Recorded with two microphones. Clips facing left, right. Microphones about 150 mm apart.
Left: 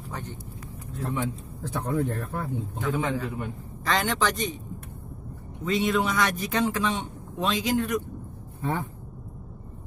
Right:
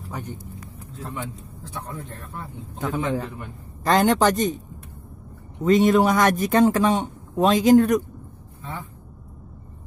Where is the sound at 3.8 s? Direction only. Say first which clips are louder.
Right 8 dB; 45° right (ahead or behind).